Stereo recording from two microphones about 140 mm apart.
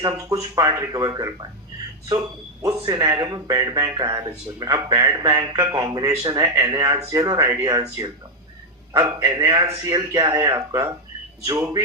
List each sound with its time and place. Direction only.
0.0 s speech: 25° right (ahead or behind)